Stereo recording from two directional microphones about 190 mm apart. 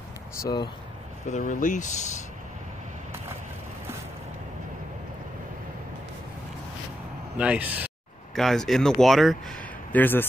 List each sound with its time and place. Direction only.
0.4 s speech: 20° left (ahead or behind)
1.2 s speech: 40° left (ahead or behind)
7.3 s a man's voice: 5° right (ahead or behind); by 10.2 s 10° left (ahead or behind)